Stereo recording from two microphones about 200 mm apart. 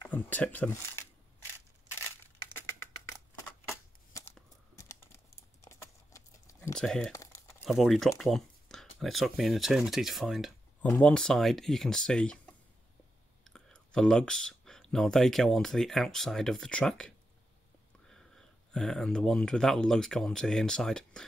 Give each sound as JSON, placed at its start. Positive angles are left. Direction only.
{"t": 0.0, "sound": "speech", "side_deg": 10}
{"t": 4.7, "sound": "typing", "side_deg": 15}
{"t": 5.7, "sound": "a sound", "side_deg": 15}
{"t": 6.7, "sound": "speech", "side_deg": 5}
{"t": 7.1, "sound": "crumpling", "side_deg": 15}
{"t": 7.6, "sound": "speech", "side_deg": 0}
{"t": 13.4, "sound": "speech", "side_deg": 5}